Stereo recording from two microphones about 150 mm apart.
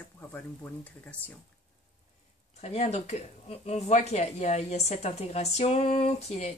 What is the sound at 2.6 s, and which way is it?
Speech, 50° left (ahead or behind).